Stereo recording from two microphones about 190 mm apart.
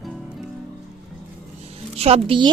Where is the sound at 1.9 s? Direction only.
30° right (ahead or behind).